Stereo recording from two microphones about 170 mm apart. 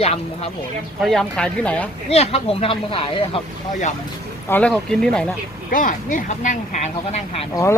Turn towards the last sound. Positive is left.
turn(degrees=40)  # may be behind; listen again after turning